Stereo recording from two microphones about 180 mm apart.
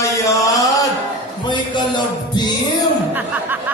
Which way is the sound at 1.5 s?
25° left (ahead or behind).